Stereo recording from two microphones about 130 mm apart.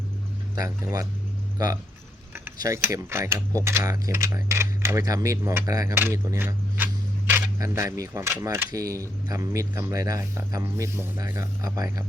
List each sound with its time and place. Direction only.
0.5 s speech: 25° right (ahead or behind)